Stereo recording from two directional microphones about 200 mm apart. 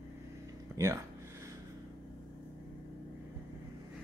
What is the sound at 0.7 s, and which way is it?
Speech, 15° right (ahead or behind).